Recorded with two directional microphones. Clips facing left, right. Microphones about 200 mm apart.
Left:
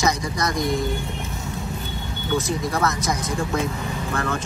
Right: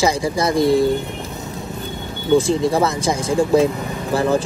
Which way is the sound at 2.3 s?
30° right (ahead or behind).